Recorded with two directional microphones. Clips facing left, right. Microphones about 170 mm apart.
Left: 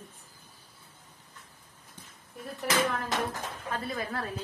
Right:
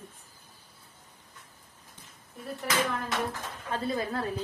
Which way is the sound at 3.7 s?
25° right (ahead or behind).